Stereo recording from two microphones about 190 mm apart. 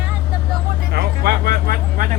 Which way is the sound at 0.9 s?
60° right (ahead or behind).